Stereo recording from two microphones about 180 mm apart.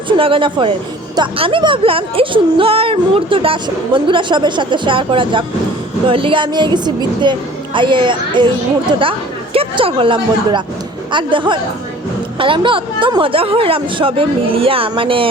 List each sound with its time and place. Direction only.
0.2 s speech: 30° right (ahead or behind)